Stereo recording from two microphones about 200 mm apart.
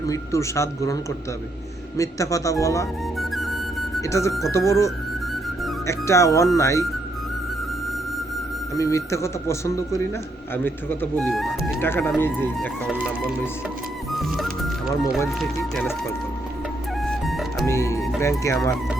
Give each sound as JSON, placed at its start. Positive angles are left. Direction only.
{"t": 0.1, "sound": "speech", "side_deg": 15}
{"t": 2.0, "sound": "speech", "side_deg": 15}
{"t": 3.2, "sound": "music", "side_deg": 0}
{"t": 4.0, "sound": "speech", "side_deg": 15}
{"t": 8.7, "sound": "speech", "side_deg": 15}
{"t": 11.8, "sound": "speech", "side_deg": 10}
{"t": 14.1, "sound": "music", "side_deg": 0}
{"t": 15.3, "sound": "speech", "side_deg": 0}
{"t": 17.0, "sound": "music", "side_deg": 0}
{"t": 17.7, "sound": "speech", "side_deg": 15}